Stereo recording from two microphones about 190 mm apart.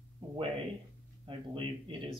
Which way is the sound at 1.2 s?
25° right (ahead or behind).